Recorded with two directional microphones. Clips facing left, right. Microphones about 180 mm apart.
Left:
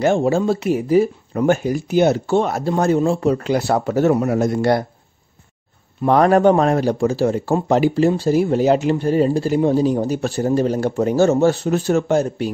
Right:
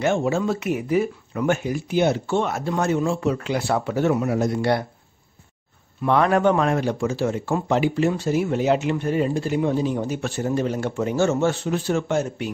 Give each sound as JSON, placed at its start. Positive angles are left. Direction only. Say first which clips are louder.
{"t": 0.0, "sound": "speech", "louder": "left 5 dB", "side_deg": 35}
{"t": 6.0, "sound": "speech", "louder": "left 5 dB", "side_deg": 40}